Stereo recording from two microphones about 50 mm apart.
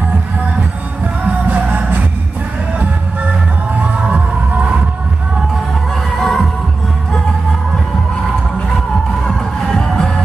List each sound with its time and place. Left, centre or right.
1.2 s music: right
4.0 s music: right
6.1 s heart sounds: centre
9.7 s music: centre